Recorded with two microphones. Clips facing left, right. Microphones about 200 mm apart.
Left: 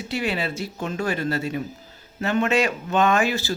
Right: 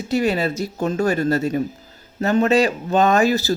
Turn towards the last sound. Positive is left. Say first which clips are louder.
# right 5 dB
turn(degrees=-40)  # may be behind; listen again after turning